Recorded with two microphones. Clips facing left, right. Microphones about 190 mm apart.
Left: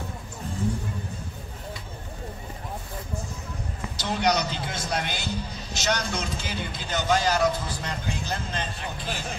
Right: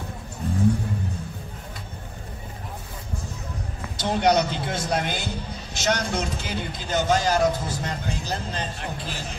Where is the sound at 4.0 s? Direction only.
50° right (ahead or behind).